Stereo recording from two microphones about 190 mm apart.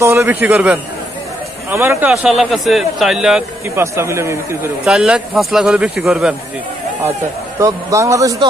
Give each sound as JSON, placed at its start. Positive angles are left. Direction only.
{"t": 0.0, "sound": "a man's voice", "side_deg": -15}
{"t": 2.2, "sound": "speech", "side_deg": 0}
{"t": 3.8, "sound": "a man's voice", "side_deg": -15}
{"t": 4.8, "sound": "speech", "side_deg": -5}
{"t": 7.5, "sound": "a man's voice", "side_deg": -15}